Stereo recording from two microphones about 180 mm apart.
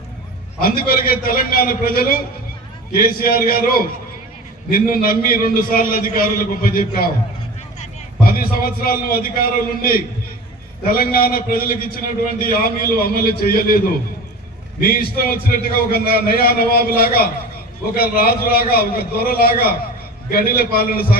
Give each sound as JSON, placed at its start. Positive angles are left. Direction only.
{"t": 0.6, "sound": "a man's voice", "side_deg": 55}
{"t": 8.3, "sound": "a man's voice", "side_deg": 55}